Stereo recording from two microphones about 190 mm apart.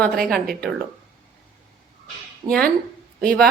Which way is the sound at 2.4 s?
25° right (ahead or behind).